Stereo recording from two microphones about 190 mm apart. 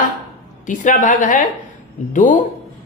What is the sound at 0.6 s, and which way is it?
Speech, 40° left (ahead or behind).